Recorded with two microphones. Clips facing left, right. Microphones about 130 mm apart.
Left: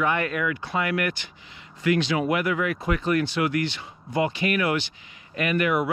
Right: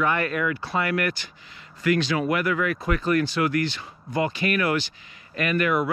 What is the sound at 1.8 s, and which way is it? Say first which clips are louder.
Speech: even; 20° left (ahead or behind).